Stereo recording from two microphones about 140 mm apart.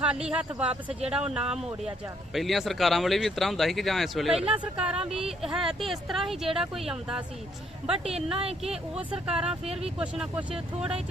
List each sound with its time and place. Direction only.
0.0 s speech: 5° right (ahead or behind)
8.4 s speech: 45° right (ahead or behind)
9.2 s speech: 5° right (ahead or behind)
9.5 s speech: 45° right (ahead or behind)
10.0 s speech: 5° right (ahead or behind)